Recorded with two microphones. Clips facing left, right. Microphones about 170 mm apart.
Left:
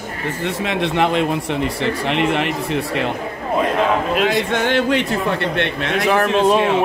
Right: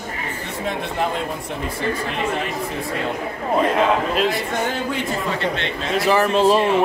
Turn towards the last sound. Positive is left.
turn(degrees=0)  # may be behind; listen again after turning